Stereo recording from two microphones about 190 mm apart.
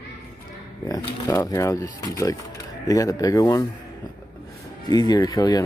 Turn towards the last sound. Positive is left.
turn(degrees=20)  # may be behind; listen again after turning